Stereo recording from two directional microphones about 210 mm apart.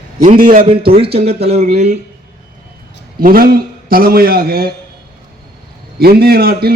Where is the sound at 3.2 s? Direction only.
45° right (ahead or behind).